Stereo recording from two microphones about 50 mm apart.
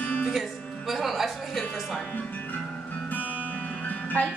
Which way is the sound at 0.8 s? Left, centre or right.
Centre.